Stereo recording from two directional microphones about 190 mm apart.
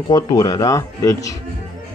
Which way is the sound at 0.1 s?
20° left (ahead or behind).